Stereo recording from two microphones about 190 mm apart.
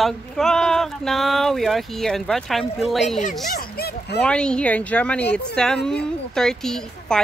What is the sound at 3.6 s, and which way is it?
Speech, 55° left (ahead or behind).